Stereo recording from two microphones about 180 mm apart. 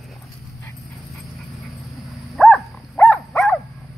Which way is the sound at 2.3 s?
5° left (ahead or behind).